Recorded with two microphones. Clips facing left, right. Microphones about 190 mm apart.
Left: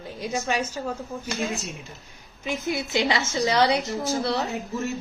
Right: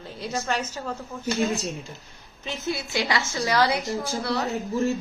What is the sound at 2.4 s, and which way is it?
A woman's voice, 15° left (ahead or behind).